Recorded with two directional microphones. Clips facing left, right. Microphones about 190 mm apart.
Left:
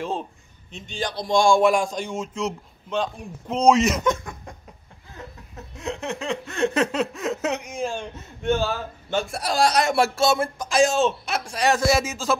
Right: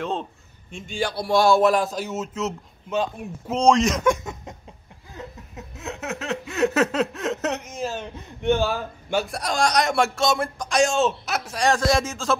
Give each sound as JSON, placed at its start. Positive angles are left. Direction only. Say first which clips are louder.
{"t": 0.0, "sound": "a man's voice", "louder": "right 1 dB", "side_deg": 0}
{"t": 0.8, "sound": "a man's voice", "louder": "right 2 dB", "side_deg": -10}
{"t": 3.6, "sound": "a man's voice", "louder": "left 1 dB", "side_deg": 5}
{"t": 4.2, "sound": "a sound", "louder": "right 3 dB", "side_deg": -20}
{"t": 5.8, "sound": "a man's voice", "louder": "left 2 dB", "side_deg": -5}
{"t": 8.4, "sound": "a man's voice", "louder": "right 2 dB", "side_deg": -15}
{"t": 9.2, "sound": "a man's voice", "louder": "left 3 dB", "side_deg": 0}